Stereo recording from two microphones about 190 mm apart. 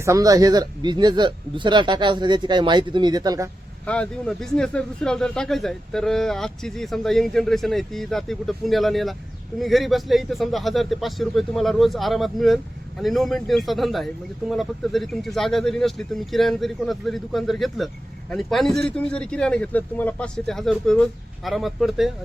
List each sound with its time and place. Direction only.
0.0 s speech: 15° right (ahead or behind)
3.8 s speech: 5° left (ahead or behind)